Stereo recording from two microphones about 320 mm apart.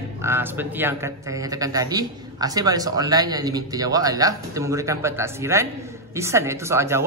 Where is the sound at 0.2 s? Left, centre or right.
Centre.